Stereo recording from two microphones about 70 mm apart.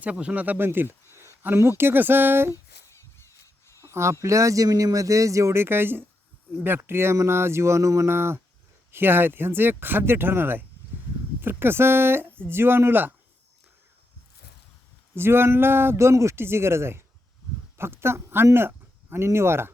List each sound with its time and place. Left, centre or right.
0.0 s speech: centre; by 2.6 s right
3.4 s a sound: left
3.9 s speech: right
15.1 s speech: right